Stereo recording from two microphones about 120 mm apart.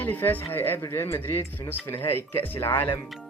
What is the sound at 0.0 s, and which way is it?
Speech, 15° left (ahead or behind).